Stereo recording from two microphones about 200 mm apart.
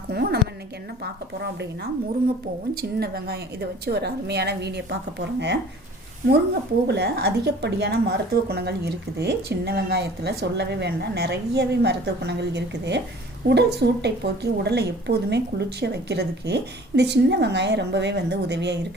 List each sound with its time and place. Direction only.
0.1 s a woman's voice: 50° right (ahead or behind)
3.0 s speech: 50° right (ahead or behind)